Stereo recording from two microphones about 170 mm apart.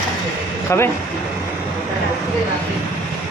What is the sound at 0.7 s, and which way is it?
Speech, 15° left (ahead or behind).